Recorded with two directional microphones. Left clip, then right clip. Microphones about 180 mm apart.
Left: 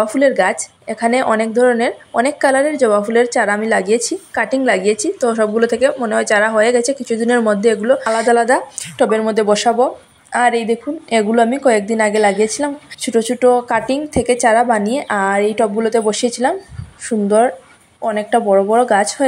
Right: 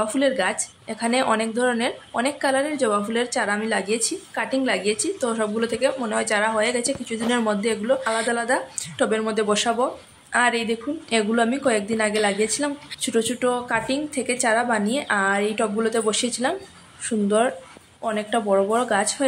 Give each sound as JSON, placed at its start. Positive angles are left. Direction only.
{"t": 0.0, "sound": "a woman's voice", "side_deg": 25}